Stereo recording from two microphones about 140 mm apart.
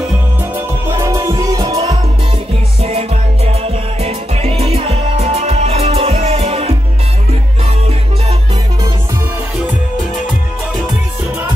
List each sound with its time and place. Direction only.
0.6 s music: 20° right (ahead or behind)
2.8 s music: 45° right (ahead or behind)